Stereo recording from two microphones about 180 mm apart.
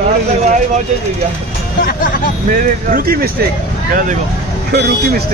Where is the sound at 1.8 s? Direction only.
50° left (ahead or behind).